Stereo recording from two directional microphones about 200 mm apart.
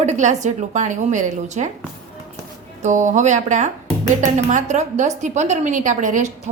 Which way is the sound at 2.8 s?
35° right (ahead or behind).